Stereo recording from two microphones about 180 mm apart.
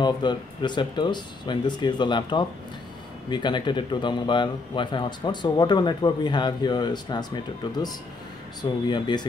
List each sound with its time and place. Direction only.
0.0 s speech: 25° left (ahead or behind)